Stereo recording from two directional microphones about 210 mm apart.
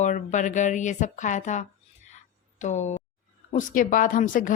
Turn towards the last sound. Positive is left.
turn(degrees=40)  # may be behind; listen again after turning